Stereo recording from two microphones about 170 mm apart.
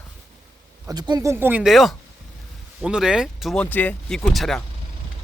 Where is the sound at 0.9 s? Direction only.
25° right (ahead or behind); by 4.6 s centre (ahead or behind).